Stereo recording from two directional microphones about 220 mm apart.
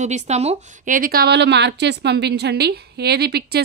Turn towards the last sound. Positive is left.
turn(degrees=-45)  # may be behind; listen again after turning